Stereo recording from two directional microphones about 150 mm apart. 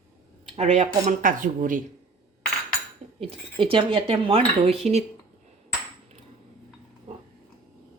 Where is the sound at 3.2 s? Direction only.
40° right (ahead or behind).